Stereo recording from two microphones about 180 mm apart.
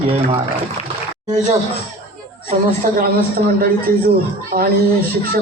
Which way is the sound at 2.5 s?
55° right (ahead or behind).